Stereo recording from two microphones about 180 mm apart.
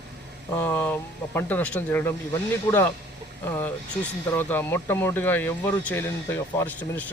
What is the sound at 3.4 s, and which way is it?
Speech, 15° left (ahead or behind).